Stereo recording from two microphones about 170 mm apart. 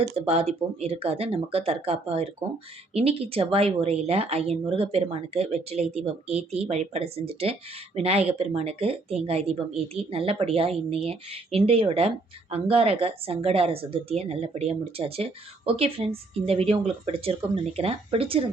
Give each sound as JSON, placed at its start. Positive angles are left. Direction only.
{"t": 0.0, "sound": "speech", "side_deg": -35}